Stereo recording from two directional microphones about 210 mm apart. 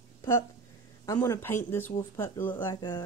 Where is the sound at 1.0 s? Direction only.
15° left (ahead or behind).